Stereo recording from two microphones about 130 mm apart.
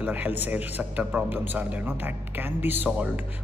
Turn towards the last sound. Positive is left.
turn(degrees=-10)  # may be behind; listen again after turning